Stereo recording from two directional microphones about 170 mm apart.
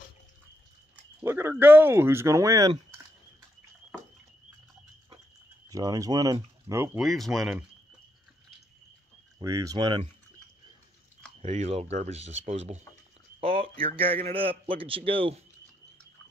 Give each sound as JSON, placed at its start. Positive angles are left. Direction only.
{"t": 1.2, "sound": "speech", "side_deg": -15}
{"t": 5.7, "sound": "speech", "side_deg": -20}
{"t": 7.0, "sound": "speech", "side_deg": 0}
{"t": 9.4, "sound": "speech", "side_deg": -20}
{"t": 11.4, "sound": "a man's voice", "side_deg": -35}